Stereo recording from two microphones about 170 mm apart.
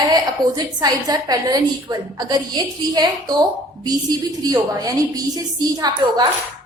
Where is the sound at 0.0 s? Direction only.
25° right (ahead or behind).